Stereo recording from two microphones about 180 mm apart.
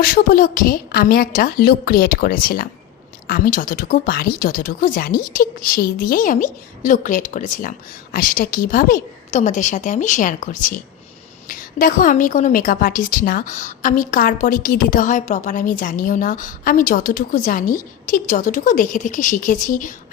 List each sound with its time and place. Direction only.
0.0 s a woman's voice: 55° left (ahead or behind)